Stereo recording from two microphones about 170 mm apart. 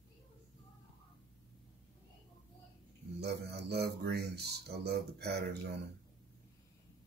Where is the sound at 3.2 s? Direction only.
75° right (ahead or behind).